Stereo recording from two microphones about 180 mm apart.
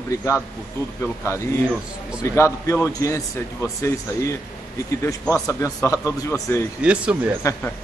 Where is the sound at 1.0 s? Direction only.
15° left (ahead or behind).